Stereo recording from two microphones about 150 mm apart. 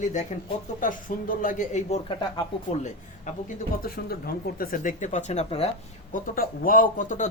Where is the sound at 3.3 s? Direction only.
55° left (ahead or behind).